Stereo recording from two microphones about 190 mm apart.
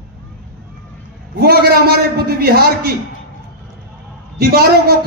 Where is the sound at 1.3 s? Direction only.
55° right (ahead or behind).